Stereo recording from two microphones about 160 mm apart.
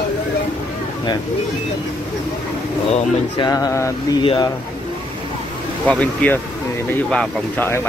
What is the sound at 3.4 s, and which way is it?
Speech, 20° left (ahead or behind).